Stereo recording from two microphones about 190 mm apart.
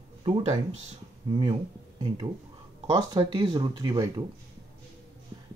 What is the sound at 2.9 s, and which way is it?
Speech, 20° right (ahead or behind).